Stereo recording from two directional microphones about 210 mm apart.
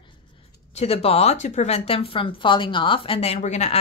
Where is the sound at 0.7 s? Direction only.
30° left (ahead or behind).